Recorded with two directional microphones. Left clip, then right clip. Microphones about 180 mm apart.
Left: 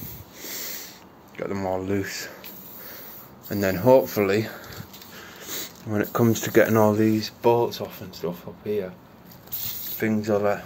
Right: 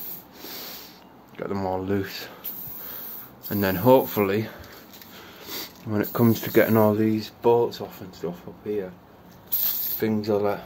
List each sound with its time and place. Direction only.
0.4 s snort: 15° right (ahead or behind)
1.3 s speech: 15° right (ahead or behind)
3.4 s speech: 15° right (ahead or behind)
5.1 s dog: 25° right (ahead or behind)
5.9 s speech: 10° right (ahead or behind)
6.9 s speech: centre (ahead or behind)
9.9 s speech: 10° right (ahead or behind)